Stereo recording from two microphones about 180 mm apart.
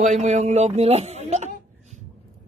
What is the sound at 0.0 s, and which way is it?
A man's voice, 40° right (ahead or behind).